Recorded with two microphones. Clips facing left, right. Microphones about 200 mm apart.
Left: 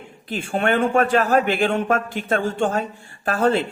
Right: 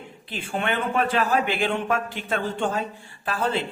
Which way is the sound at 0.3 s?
45° left (ahead or behind).